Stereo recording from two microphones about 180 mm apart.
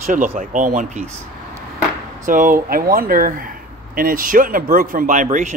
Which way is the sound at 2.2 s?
45° right (ahead or behind).